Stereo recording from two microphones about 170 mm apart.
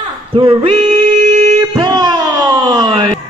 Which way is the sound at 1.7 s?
25° right (ahead or behind).